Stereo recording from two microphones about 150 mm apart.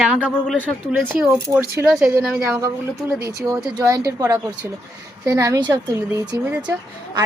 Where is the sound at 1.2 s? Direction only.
10° right (ahead or behind).